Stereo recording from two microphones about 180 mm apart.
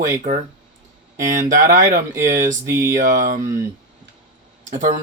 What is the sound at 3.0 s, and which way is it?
Speech, 50° right (ahead or behind).